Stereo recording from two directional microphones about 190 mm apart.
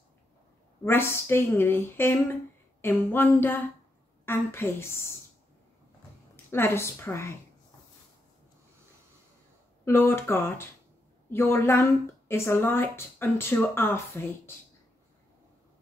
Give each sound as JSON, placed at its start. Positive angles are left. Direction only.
{"t": 0.8, "sound": "a woman's voice", "side_deg": 10}
{"t": 6.5, "sound": "a woman's voice", "side_deg": 10}
{"t": 9.8, "sound": "a woman's voice", "side_deg": 10}